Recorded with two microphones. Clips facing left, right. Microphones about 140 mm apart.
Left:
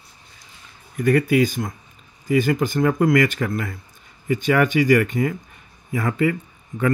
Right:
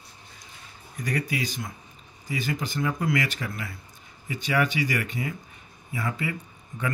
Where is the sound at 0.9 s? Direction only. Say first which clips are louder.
Left 12 dB; 55° left (ahead or behind).